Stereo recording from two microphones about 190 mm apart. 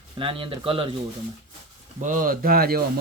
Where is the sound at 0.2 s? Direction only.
25° right (ahead or behind).